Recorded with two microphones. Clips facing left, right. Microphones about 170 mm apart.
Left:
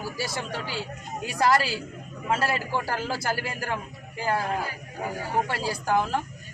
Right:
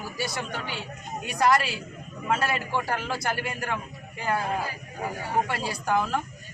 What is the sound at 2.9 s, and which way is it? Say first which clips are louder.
Speech: left 1 dB; 30° left (ahead or behind).